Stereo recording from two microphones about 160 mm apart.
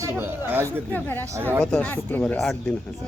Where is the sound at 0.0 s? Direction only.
15° right (ahead or behind).